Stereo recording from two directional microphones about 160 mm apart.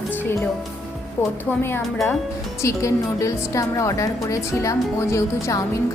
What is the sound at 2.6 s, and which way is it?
A woman's voice, 20° left (ahead or behind).